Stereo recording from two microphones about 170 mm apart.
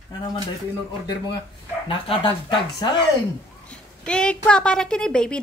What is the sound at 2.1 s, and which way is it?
Speech, 30° left (ahead or behind).